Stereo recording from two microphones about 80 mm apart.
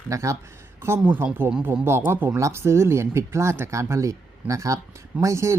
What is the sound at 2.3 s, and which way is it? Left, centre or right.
Speech, right.